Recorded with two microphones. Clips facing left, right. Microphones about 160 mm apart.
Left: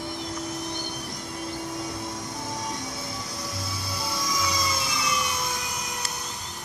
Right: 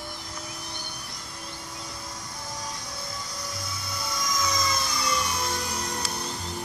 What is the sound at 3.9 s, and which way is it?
Music, 30° left (ahead or behind).